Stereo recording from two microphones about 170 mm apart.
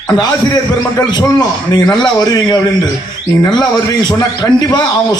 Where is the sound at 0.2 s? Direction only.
20° left (ahead or behind).